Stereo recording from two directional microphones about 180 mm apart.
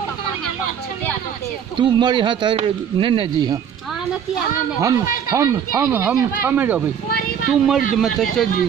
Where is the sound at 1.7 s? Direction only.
25° right (ahead or behind).